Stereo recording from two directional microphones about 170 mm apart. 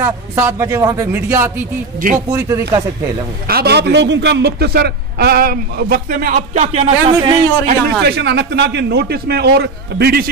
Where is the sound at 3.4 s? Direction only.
65° right (ahead or behind); by 7.1 s 40° right (ahead or behind).